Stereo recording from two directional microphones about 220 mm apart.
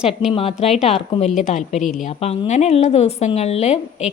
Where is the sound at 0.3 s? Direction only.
25° left (ahead or behind).